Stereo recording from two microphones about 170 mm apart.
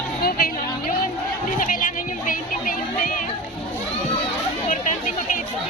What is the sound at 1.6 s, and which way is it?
Music, 55° left (ahead or behind).